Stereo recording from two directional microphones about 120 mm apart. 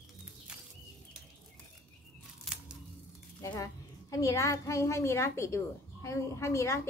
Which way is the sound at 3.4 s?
25° left (ahead or behind).